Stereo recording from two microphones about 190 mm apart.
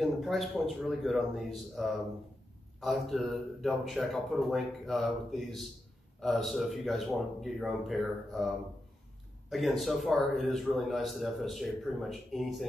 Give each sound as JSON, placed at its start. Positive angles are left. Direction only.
{"t": 0.0, "sound": "a man's voice", "side_deg": 0}